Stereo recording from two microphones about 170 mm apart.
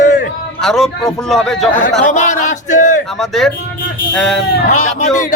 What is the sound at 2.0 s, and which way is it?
Speech, 45° left (ahead or behind).